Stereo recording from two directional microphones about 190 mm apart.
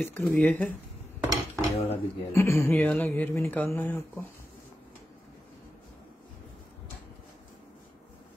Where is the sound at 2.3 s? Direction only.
15° left (ahead or behind).